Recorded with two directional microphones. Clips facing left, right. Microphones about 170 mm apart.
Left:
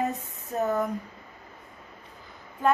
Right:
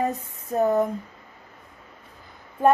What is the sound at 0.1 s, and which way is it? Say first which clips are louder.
Speech: right 5 dB; 35° right (ahead or behind).